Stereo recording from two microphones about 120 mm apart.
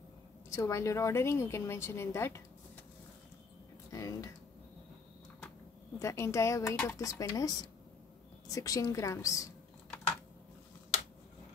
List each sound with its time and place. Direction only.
0.5 s a woman's voice: 25° left (ahead or behind)
3.9 s a sound: 25° left (ahead or behind)
5.9 s a woman's voice: 25° left (ahead or behind)